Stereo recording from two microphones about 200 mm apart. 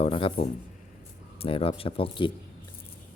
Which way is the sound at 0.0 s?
25° left (ahead or behind).